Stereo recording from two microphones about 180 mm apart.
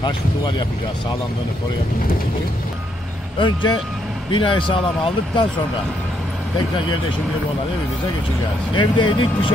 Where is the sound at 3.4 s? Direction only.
25° left (ahead or behind).